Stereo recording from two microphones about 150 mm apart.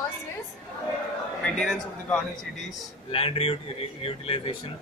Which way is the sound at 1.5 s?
5° left (ahead or behind).